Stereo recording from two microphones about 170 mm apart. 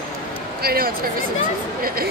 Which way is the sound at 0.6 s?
60° right (ahead or behind).